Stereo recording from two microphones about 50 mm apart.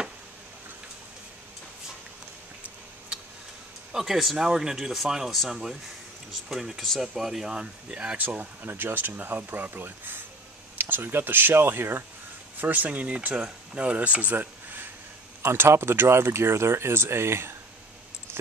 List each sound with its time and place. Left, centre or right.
4.0 s speech: centre
7.5 s speech: right
8.2 s speech: right
12.5 s speech: right
15.5 s speech: right